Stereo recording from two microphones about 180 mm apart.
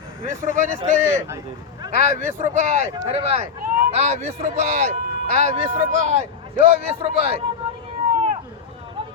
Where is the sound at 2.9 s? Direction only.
30° right (ahead or behind); by 4.8 s 45° right (ahead or behind).